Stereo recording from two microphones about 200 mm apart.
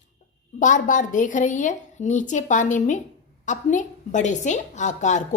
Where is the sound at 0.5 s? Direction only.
40° left (ahead or behind).